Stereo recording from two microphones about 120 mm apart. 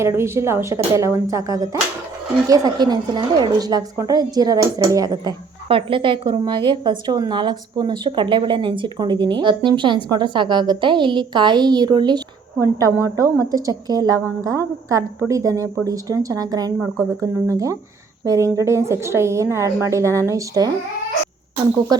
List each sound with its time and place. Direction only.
0.0 s a woman's voice: 20° right (ahead or behind)
5.6 s a woman's voice: 50° right (ahead or behind); by 20.7 s 30° right (ahead or behind)